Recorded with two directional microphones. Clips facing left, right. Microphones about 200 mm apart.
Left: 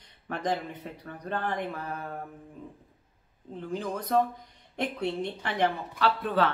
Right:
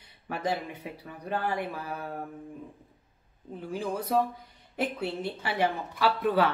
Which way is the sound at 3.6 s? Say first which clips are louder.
Right 1 dB; 10° right (ahead or behind).